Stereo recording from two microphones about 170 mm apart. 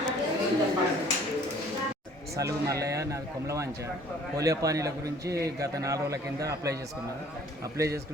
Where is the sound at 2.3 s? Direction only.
20° right (ahead or behind).